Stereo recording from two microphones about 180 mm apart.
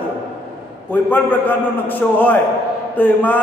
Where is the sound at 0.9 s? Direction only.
10° left (ahead or behind).